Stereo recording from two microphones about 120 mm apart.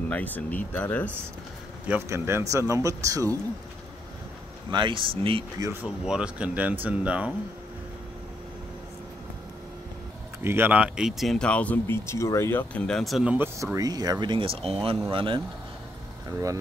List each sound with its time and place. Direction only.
0.1 s speech: 15° left (ahead or behind)
1.9 s speech: 20° right (ahead or behind)
4.6 s speech: 40° right (ahead or behind)
5.6 s speech: 20° right (ahead or behind)
6.0 s speech: 5° right (ahead or behind)
10.4 s speech: 20° right (ahead or behind); by 12.8 s 20° left (ahead or behind)
12.8 s speech: 5° left (ahead or behind)
13.7 s speech: 30° right (ahead or behind)
16.3 s speech: 25° right (ahead or behind)